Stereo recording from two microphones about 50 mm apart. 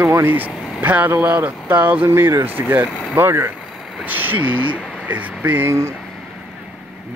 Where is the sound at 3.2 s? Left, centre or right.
Right.